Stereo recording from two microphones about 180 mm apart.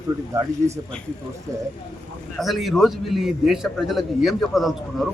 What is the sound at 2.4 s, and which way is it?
A man's voice, centre (ahead or behind).